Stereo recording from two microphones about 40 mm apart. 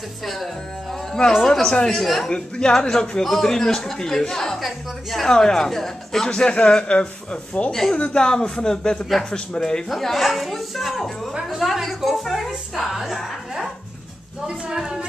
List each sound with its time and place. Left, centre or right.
0.2 s a woman's voice: centre
1.4 s speech: centre
2.0 s a woman's voice: centre
2.2 s speech: centre
4.6 s a woman's voice: centre
5.2 s speech: centre
6.2 s a man's voice: left
9.8 s a woman's voice: centre
14.7 s a woman's voice: centre